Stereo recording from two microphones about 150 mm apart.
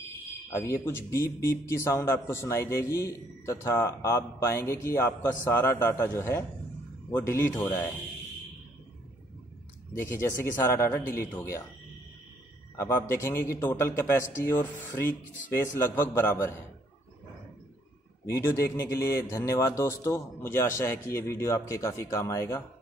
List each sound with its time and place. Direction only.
0.5 s a man's voice: 20° left (ahead or behind)
9.9 s a man's voice: 20° left (ahead or behind)
12.7 s a man's voice: 20° left (ahead or behind)
18.2 s a man's voice: 20° left (ahead or behind)